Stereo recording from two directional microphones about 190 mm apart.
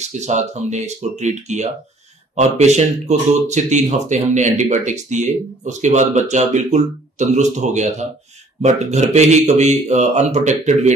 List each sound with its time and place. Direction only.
0.0 s speech: 40° right (ahead or behind)